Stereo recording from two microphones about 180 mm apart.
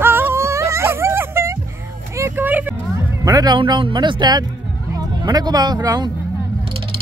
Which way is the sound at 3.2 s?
20° right (ahead or behind).